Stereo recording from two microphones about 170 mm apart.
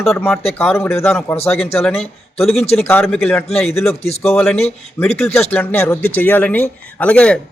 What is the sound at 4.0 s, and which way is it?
Speech, 35° left (ahead or behind).